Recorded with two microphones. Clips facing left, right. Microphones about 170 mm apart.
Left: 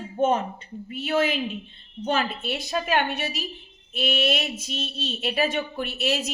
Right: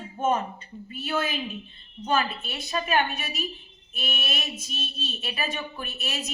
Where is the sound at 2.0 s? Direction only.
75° left (ahead or behind).